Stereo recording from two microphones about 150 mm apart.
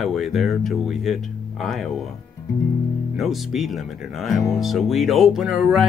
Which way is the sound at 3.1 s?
Centre (ahead or behind).